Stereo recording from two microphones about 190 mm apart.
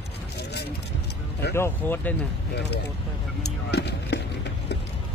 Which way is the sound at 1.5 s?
10° left (ahead or behind).